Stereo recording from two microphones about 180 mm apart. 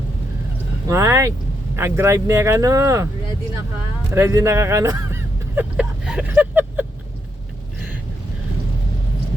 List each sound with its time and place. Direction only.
0.9 s speech: 15° right (ahead or behind)
4.1 s speech: 15° right (ahead or behind)